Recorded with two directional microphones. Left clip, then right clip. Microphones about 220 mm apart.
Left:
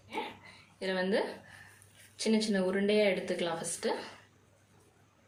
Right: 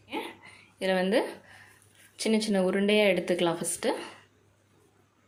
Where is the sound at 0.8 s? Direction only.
40° right (ahead or behind).